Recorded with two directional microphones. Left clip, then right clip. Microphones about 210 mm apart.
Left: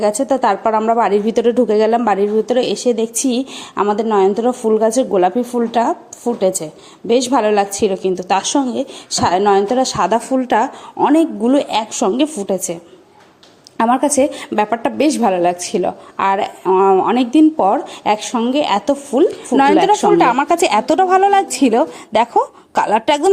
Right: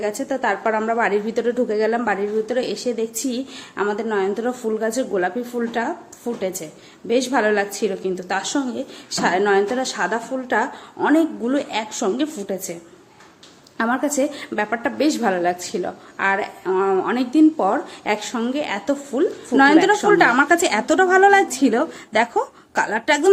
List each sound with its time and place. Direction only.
0.0 s a woman's voice: 30° left (ahead or behind)
13.7 s a woman's voice: 30° left (ahead or behind)